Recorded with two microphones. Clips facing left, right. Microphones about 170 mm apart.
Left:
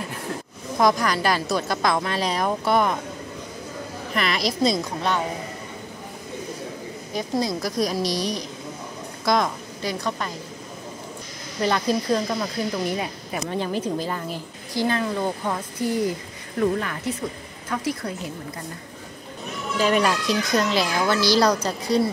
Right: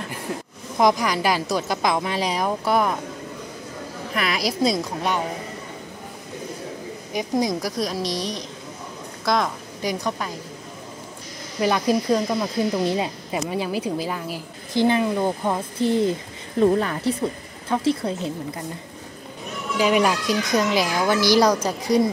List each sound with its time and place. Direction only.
0.7 s a woman's voice: 15° right (ahead or behind)
4.1 s a woman's voice: 5° right (ahead or behind)
7.1 s a woman's voice: 15° right (ahead or behind)
7.8 s a woman's voice: centre (ahead or behind)
9.8 s a woman's voice: 15° right (ahead or behind)
11.6 s a woman's voice: 10° right (ahead or behind)
12.8 s a woman's voice: 25° right (ahead or behind)
13.5 s a woman's voice: 10° right (ahead or behind)
14.7 s speech: 20° right (ahead or behind)
19.8 s a woman's voice: 5° right (ahead or behind)